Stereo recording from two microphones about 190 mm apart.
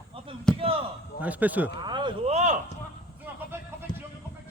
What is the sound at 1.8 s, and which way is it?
Speech, 25° right (ahead or behind).